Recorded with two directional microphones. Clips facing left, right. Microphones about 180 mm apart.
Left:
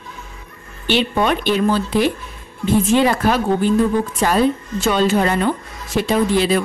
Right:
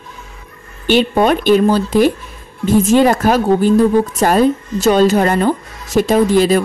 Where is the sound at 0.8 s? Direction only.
45° right (ahead or behind).